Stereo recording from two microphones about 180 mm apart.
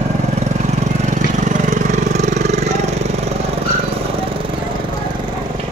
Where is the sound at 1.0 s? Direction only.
45° right (ahead or behind).